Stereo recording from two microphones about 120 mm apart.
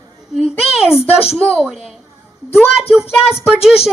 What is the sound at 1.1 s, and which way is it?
A woman's voice, 5° right (ahead or behind).